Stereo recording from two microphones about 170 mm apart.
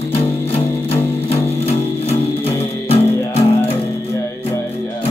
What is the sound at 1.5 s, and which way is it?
Music, 40° left (ahead or behind).